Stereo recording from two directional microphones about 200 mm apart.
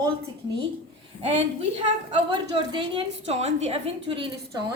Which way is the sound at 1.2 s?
30° right (ahead or behind).